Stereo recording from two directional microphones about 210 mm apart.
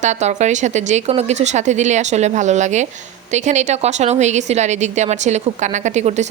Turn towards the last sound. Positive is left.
turn(degrees=-35)  # may be behind; listen again after turning